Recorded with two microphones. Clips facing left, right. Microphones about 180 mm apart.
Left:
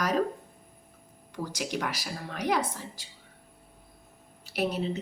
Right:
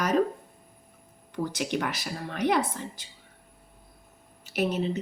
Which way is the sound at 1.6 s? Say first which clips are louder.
Right 1 dB; centre (ahead or behind).